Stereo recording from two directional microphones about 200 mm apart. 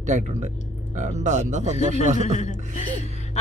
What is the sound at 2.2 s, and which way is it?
Speech, 35° left (ahead or behind).